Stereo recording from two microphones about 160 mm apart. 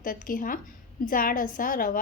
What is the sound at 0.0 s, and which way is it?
A woman's voice, 55° left (ahead or behind).